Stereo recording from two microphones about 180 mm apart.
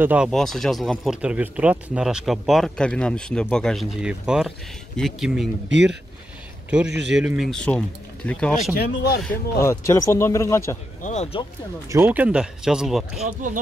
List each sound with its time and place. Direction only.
0.0 s speech: 10° right (ahead or behind)
0.3 s speech: centre (ahead or behind)
6.7 s speech: 5° right (ahead or behind)
8.7 s speech: 60° left (ahead or behind)
9.2 s a man's voice: 15° left (ahead or behind)
11.0 s speech: 40° left (ahead or behind)
11.9 s speech: 10° right (ahead or behind)
13.4 s speech: 45° right (ahead or behind)